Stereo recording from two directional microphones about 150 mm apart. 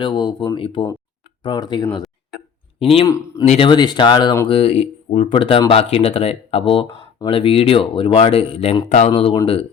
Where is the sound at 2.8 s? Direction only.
40° left (ahead or behind).